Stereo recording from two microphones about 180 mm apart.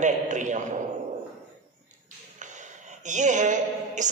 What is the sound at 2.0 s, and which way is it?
A man's voice, 45° right (ahead or behind).